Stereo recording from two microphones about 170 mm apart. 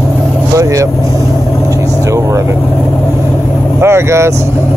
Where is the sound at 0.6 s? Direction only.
20° right (ahead or behind).